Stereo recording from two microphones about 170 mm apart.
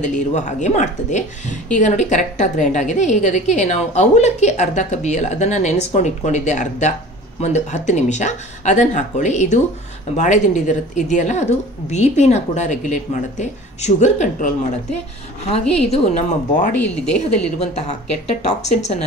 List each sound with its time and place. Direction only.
0.0 s a woman's voice: 45° left (ahead or behind)
16.7 s speech: 10° left (ahead or behind)
17.6 s speech: 40° left (ahead or behind)